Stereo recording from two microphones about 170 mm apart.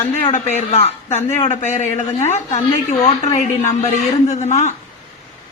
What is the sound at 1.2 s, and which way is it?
Speech, 15° left (ahead or behind).